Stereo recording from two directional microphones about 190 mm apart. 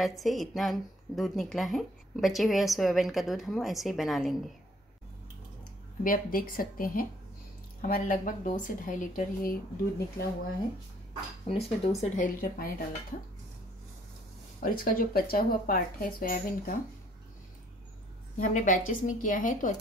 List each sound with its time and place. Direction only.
0.0 s speech: centre (ahead or behind)
6.0 s speech: 45° left (ahead or behind)
11.4 s speech: 30° left (ahead or behind)
12.0 s speech: 45° left (ahead or behind)
14.6 s speech: 50° left (ahead or behind)
18.4 s speech: 40° left (ahead or behind)